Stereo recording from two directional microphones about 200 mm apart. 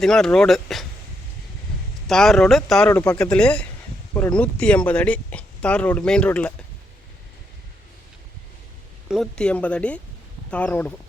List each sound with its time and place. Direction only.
0.0 s speech: centre (ahead or behind)
2.0 s speech: centre (ahead or behind)
9.0 s speech: centre (ahead or behind)